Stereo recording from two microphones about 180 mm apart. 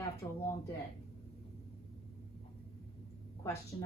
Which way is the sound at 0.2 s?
25° left (ahead or behind).